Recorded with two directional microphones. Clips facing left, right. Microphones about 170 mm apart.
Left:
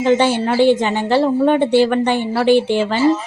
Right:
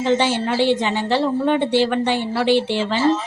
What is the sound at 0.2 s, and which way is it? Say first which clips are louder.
A woman's voice: left 4 dB; 50° left (ahead or behind).